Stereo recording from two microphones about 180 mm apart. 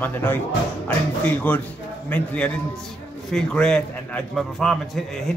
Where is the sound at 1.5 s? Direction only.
10° left (ahead or behind).